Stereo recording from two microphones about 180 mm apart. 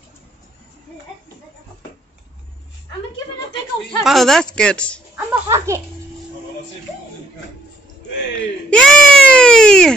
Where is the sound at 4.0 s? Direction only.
Centre (ahead or behind).